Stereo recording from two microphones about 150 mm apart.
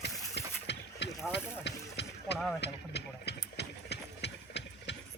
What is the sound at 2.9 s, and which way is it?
Horse, 90° left.